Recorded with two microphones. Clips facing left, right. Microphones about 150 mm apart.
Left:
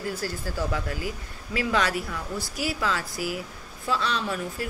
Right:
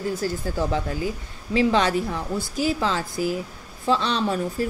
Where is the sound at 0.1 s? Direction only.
25° right (ahead or behind).